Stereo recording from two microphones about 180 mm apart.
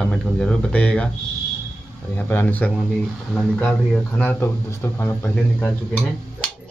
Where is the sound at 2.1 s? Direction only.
10° left (ahead or behind).